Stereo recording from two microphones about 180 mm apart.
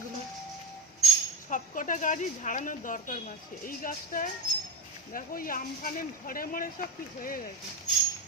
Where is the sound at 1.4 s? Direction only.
45° left (ahead or behind).